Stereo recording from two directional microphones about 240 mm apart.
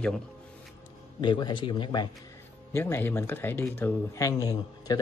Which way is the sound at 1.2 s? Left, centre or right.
Centre.